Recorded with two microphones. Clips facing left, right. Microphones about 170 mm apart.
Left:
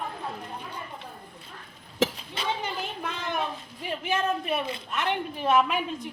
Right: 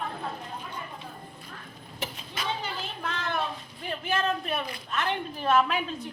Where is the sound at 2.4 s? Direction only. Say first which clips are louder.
Left 2 dB; 30° left (ahead or behind).